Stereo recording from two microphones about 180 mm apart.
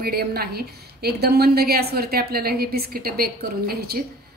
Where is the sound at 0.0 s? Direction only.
60° right (ahead or behind).